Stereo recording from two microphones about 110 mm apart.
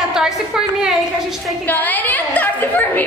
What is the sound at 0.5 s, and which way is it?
Speech, 5° right (ahead or behind).